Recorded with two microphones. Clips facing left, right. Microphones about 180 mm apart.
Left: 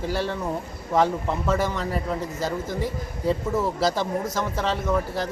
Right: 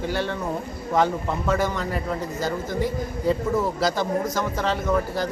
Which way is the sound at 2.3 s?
30° left (ahead or behind).